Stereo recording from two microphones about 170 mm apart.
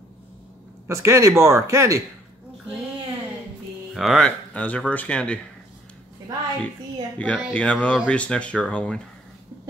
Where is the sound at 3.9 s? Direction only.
Centre (ahead or behind).